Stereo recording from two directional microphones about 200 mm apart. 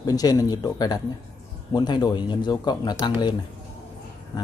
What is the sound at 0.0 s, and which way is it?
Speech, 20° left (ahead or behind).